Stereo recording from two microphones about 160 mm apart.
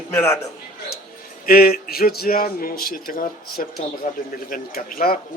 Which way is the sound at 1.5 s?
70° left (ahead or behind).